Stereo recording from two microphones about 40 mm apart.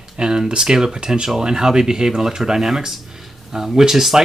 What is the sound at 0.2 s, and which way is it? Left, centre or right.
Speech, right.